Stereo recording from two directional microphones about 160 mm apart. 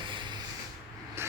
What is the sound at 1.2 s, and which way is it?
Vehicle, 15° right (ahead or behind).